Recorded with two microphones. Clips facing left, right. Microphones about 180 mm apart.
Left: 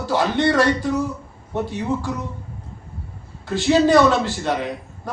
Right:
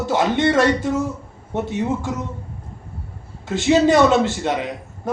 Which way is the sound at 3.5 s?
20° right (ahead or behind).